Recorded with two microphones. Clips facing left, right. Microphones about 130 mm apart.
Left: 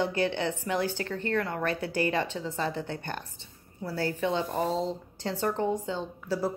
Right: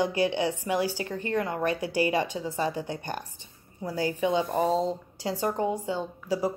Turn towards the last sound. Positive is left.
turn(degrees=-15)  # may be behind; listen again after turning